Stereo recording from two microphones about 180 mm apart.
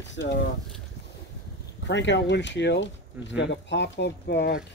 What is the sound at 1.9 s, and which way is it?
Speech, 80° left.